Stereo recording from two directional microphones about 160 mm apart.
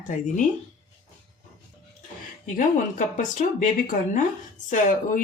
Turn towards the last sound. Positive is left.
turn(degrees=55)  # may be behind; listen again after turning